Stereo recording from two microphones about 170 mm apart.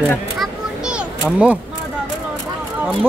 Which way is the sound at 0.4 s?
5° right (ahead or behind).